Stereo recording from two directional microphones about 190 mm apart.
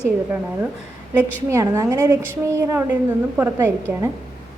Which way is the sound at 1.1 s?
15° right (ahead or behind).